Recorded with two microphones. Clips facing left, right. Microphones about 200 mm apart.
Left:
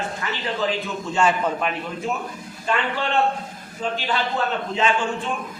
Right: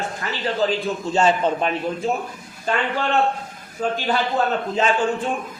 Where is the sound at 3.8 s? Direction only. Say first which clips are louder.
Right 3 dB; 45° right (ahead or behind).